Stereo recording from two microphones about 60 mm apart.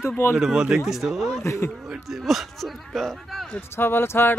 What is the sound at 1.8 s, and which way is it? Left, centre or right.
Speech, centre.